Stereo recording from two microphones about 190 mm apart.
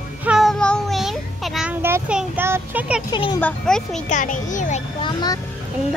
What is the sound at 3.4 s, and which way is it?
Speech, 5° left (ahead or behind).